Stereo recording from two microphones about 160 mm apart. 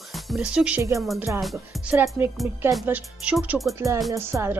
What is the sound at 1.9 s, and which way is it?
Speech, 15° right (ahead or behind).